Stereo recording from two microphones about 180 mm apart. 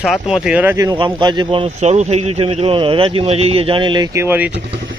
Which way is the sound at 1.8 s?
40° right (ahead or behind).